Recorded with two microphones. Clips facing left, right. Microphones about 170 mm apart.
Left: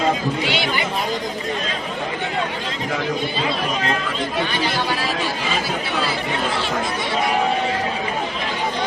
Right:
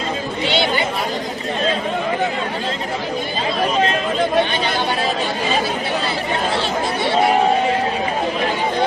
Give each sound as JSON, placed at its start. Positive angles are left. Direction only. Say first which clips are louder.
{"t": 0.5, "sound": "chatter", "louder": "right 4 dB", "side_deg": -25}